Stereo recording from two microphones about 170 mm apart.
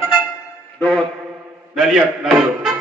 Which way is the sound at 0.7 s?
5° left (ahead or behind).